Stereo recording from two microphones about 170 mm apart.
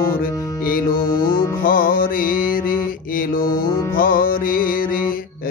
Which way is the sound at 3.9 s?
60° left (ahead or behind).